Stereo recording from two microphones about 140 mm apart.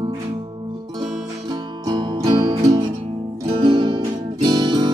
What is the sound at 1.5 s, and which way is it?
Music, 30° right (ahead or behind).